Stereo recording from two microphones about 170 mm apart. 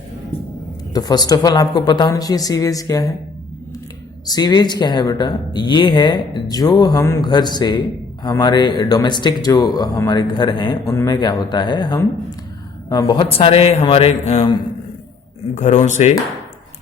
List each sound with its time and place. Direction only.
0.9 s speech: 25° left (ahead or behind)
4.3 s a man's voice: 20° left (ahead or behind)
15.5 s speech: 45° left (ahead or behind)